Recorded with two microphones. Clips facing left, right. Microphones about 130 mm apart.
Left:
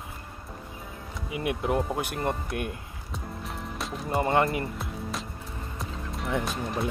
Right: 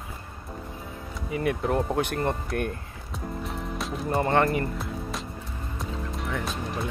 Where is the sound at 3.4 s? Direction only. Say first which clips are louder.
Right 1 dB; centre (ahead or behind).